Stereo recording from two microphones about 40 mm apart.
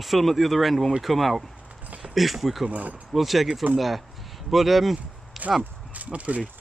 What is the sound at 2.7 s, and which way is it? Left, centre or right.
Speech, right.